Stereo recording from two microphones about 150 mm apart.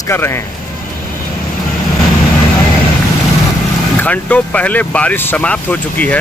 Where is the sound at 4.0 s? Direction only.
10° left (ahead or behind).